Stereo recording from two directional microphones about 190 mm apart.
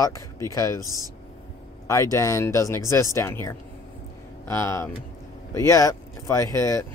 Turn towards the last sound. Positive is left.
turn(degrees=15)  # may be behind; listen again after turning